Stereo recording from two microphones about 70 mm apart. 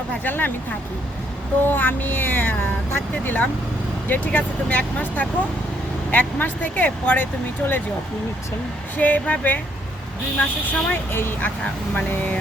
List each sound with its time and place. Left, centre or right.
0.3 s speech: left
1.6 s speech: left
9.0 s speech: left